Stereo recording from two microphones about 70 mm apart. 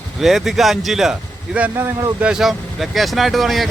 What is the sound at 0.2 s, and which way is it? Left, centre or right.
Speech, centre.